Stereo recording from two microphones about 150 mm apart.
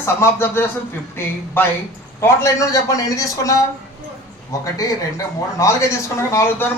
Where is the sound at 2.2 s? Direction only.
20° left (ahead or behind).